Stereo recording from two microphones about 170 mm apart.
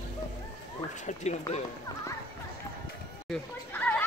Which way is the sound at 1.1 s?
40° left (ahead or behind).